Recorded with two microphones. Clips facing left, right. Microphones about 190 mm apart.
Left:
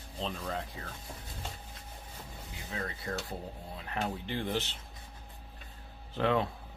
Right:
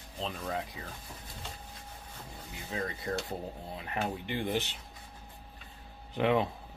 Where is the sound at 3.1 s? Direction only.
25° right (ahead or behind).